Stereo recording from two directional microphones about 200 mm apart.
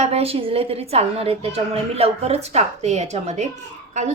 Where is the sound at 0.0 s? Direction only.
30° right (ahead or behind).